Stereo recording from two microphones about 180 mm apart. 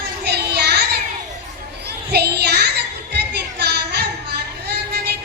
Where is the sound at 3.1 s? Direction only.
65° right (ahead or behind).